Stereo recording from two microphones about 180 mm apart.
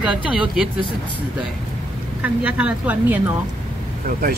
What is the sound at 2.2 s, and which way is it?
A woman's voice, 10° right (ahead or behind).